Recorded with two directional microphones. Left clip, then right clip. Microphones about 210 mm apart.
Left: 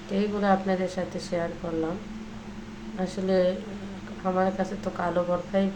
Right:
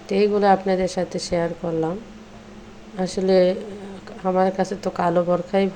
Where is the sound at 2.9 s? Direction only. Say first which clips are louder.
Right 7 dB; 30° right (ahead or behind).